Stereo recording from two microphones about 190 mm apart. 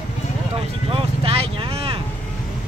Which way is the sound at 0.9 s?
30° right (ahead or behind).